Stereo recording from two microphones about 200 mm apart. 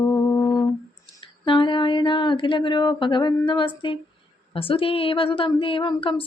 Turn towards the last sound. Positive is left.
turn(degrees=25)  # may be behind; listen again after turning